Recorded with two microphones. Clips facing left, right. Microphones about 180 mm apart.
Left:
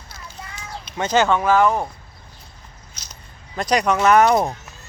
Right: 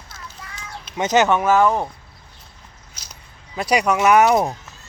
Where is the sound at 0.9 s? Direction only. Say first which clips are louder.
Right 1 dB; 20° right (ahead or behind).